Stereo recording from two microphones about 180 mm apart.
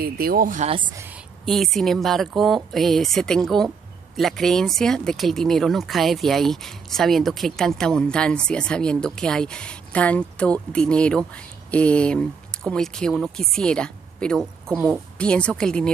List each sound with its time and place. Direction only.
0.0 s speech: 55° right (ahead or behind)
1.4 s speech: centre (ahead or behind)